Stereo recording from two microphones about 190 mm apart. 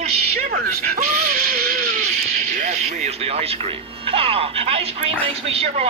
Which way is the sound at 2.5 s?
40° right (ahead or behind).